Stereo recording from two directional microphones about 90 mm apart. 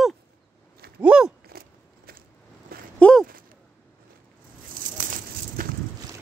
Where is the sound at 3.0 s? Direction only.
10° left (ahead or behind).